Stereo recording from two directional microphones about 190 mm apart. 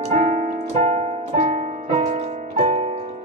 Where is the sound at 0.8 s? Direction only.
40° right (ahead or behind).